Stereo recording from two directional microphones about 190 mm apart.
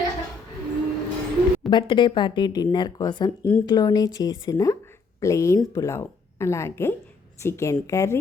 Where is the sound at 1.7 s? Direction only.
25° left (ahead or behind).